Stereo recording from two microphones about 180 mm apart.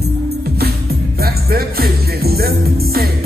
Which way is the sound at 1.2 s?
60° right (ahead or behind).